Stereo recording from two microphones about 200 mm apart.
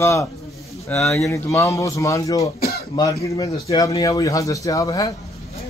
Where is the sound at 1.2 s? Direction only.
15° left (ahead or behind).